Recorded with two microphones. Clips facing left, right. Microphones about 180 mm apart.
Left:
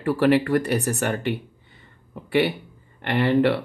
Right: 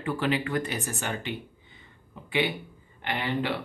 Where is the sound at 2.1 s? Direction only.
65° left (ahead or behind).